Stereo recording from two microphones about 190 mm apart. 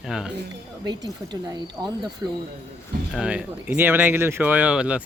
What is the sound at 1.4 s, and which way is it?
Speech, 20° right (ahead or behind).